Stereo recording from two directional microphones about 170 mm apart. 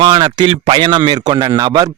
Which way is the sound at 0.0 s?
25° right (ahead or behind).